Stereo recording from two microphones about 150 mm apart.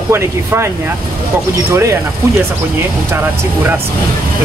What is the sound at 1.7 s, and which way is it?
Speech, 20° right (ahead or behind).